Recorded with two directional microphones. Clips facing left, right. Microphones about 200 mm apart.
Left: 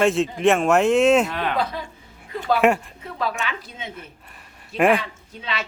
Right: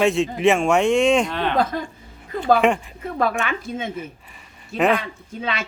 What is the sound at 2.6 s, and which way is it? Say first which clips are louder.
Speech: even; 5° left (ahead or behind).